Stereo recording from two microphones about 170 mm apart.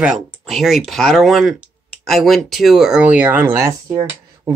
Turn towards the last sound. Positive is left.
turn(degrees=-20)  # may be behind; listen again after turning